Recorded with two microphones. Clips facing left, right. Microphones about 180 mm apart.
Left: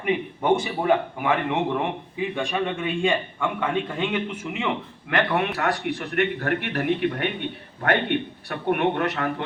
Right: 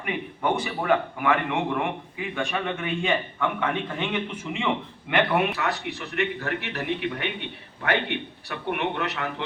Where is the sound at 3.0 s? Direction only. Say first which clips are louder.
Left 1 dB; 10° left (ahead or behind).